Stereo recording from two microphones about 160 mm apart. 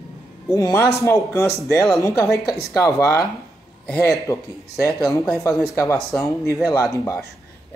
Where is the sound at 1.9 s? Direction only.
20° left (ahead or behind).